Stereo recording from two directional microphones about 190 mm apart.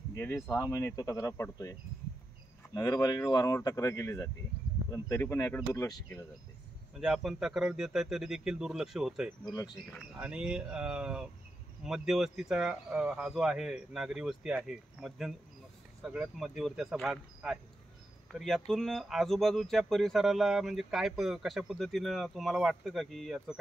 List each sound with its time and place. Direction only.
0.1 s speech: 15° left (ahead or behind)
7.0 s speech: 5° right (ahead or behind)
9.4 s speech: 20° left (ahead or behind)
9.8 s speech: 5° right (ahead or behind)